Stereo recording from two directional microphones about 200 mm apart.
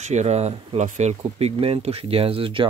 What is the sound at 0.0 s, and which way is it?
Speech, 35° right (ahead or behind).